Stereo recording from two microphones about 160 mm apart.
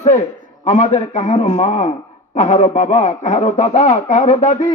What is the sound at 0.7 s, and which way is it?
Speech, 45° left (ahead or behind).